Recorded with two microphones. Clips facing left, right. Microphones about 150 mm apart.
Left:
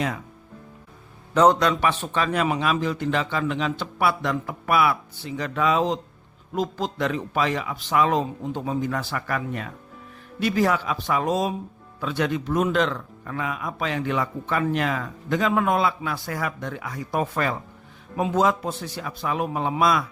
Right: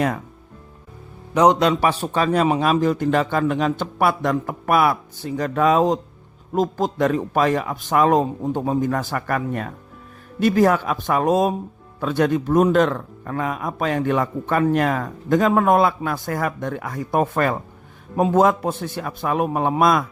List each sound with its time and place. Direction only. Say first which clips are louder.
1.3 s a man's voice: right 2 dB; 15° right (ahead or behind)
1.5 s a man's voice: right 4 dB; 25° right (ahead or behind)
1.8 s speech: right 4 dB; 40° right (ahead or behind)